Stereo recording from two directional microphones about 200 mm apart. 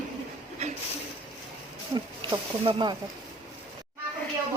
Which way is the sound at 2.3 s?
25° right (ahead or behind).